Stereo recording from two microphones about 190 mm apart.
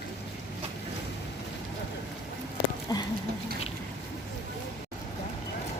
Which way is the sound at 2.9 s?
20° left (ahead or behind).